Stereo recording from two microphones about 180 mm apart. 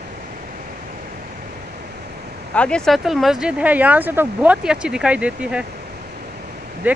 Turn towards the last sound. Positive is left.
turn(degrees=-10)  # may be behind; listen again after turning